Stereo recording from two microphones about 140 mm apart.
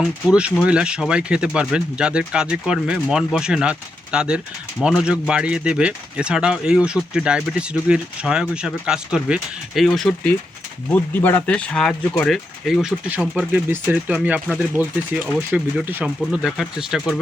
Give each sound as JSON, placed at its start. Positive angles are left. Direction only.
{"t": 0.0, "sound": "speech", "side_deg": -5}
{"t": 10.8, "sound": "speech", "side_deg": 15}